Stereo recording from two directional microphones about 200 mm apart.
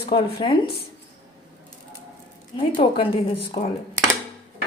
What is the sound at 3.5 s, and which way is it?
Speech, 25° left (ahead or behind).